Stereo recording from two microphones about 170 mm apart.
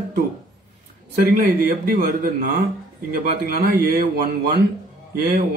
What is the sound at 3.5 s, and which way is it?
Speech, 60° right (ahead or behind).